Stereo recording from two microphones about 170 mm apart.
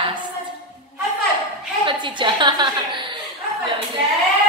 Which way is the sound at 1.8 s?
30° right (ahead or behind).